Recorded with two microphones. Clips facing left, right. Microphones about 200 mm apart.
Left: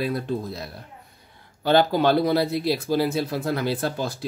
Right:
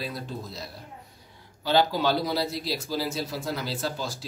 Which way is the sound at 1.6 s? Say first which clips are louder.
Left 5 dB; 55° left (ahead or behind).